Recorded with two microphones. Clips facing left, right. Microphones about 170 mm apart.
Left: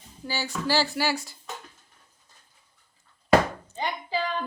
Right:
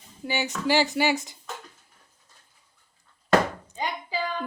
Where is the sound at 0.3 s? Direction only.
20° right (ahead or behind).